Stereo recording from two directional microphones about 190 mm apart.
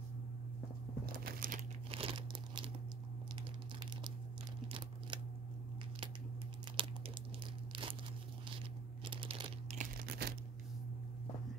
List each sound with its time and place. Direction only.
1.2 s crumpling: 45° right (ahead or behind)
1.9 s crumpling: 30° right (ahead or behind)
3.8 s crumpling: 25° right (ahead or behind)
4.6 s a sound: 25° right (ahead or behind)
6.8 s crumpling: 25° right (ahead or behind)
9.0 s computer keyboard: 25° right (ahead or behind)
9.9 s crunch: 55° right (ahead or behind)